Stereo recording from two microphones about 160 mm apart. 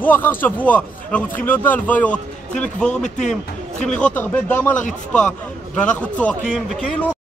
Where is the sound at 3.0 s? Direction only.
50° left (ahead or behind).